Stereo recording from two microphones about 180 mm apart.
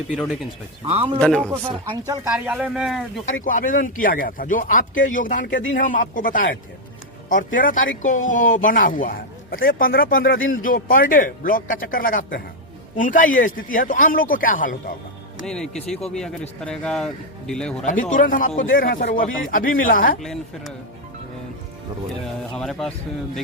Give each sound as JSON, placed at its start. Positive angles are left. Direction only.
{"t": 0.1, "sound": "speech", "side_deg": -5}
{"t": 0.9, "sound": "speech", "side_deg": -35}
{"t": 1.2, "sound": "speech", "side_deg": 5}
{"t": 2.3, "sound": "speech", "side_deg": -5}
{"t": 3.4, "sound": "speech", "side_deg": 50}
{"t": 15.4, "sound": "speech", "side_deg": 5}
{"t": 18.1, "sound": "speech", "side_deg": 50}
{"t": 20.2, "sound": "speech", "side_deg": 0}
{"t": 22.2, "sound": "speech", "side_deg": 0}